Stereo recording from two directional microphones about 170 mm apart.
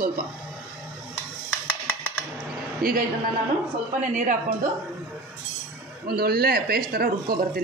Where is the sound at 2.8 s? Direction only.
60° right (ahead or behind).